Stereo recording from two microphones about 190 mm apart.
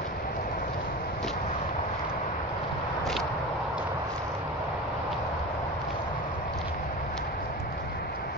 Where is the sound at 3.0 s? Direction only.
Centre (ahead or behind).